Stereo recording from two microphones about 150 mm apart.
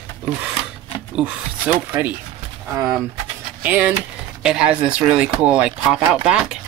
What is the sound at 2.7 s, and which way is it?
Speech, 20° right (ahead or behind).